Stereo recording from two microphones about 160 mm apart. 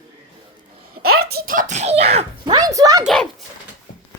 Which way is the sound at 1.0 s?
75° right (ahead or behind).